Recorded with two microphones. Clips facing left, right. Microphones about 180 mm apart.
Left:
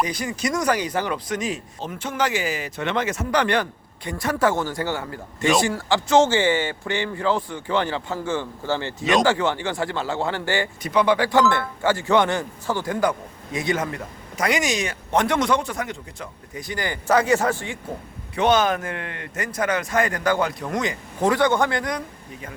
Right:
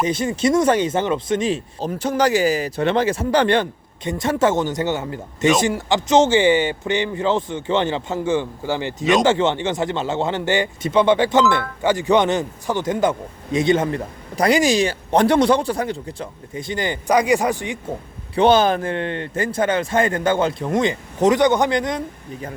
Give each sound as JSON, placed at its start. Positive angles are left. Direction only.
{"t": 0.0, "sound": "speech", "side_deg": -25}
{"t": 18.3, "sound": "speech", "side_deg": -30}